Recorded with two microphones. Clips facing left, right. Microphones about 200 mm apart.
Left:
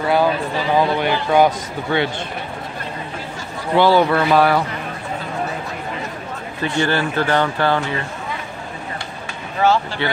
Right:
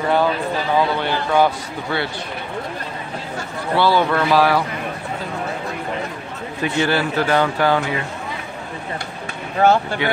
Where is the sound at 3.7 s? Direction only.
15° left (ahead or behind).